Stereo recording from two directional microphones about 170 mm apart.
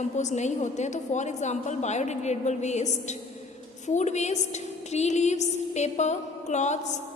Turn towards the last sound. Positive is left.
turn(degrees=45)  # may be behind; listen again after turning